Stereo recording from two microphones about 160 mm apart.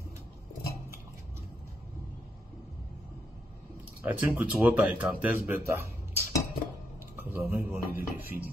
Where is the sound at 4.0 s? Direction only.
10° right (ahead or behind).